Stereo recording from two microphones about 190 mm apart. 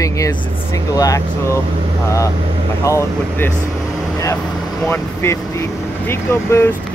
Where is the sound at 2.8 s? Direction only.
15° left (ahead or behind).